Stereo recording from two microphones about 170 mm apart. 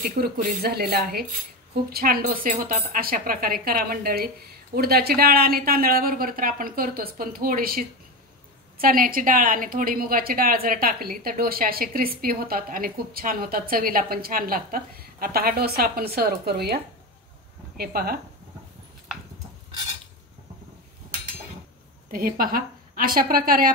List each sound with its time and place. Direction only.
0.1 s speech: 55° right (ahead or behind)
22.1 s speech: 60° right (ahead or behind)